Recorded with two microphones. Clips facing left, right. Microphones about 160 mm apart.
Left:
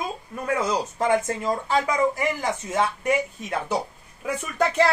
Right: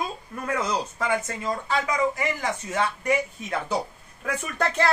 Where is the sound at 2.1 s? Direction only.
20° left (ahead or behind).